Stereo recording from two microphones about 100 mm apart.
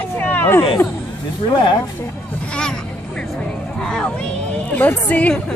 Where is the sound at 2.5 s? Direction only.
10° left (ahead or behind).